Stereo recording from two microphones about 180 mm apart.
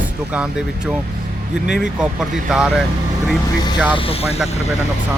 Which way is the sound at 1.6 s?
5° right (ahead or behind).